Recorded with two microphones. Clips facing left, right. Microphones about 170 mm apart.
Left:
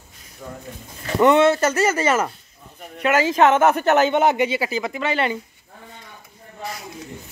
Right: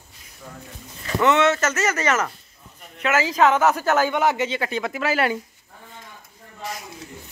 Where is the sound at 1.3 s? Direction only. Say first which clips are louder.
Left 4 dB; 30° left (ahead or behind); by 5.4 s 5° right (ahead or behind).